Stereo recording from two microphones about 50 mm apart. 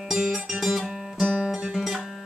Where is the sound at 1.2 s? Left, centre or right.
Right.